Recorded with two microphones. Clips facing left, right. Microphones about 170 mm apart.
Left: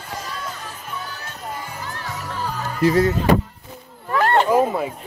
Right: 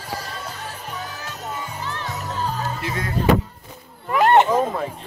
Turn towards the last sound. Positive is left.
turn(degrees=10)  # may be behind; listen again after turning